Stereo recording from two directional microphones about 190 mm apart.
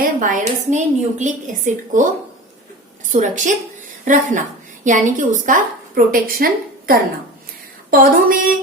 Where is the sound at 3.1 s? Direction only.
40° right (ahead or behind).